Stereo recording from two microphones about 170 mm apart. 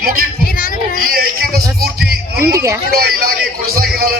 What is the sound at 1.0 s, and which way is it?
Music, 60° right (ahead or behind).